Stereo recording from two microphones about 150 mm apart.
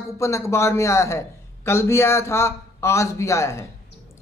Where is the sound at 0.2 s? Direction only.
20° left (ahead or behind).